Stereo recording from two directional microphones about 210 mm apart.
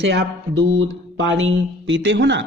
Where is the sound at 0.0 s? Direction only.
55° right (ahead or behind).